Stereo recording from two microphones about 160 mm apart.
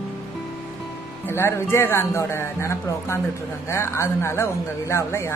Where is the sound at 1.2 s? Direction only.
15° left (ahead or behind).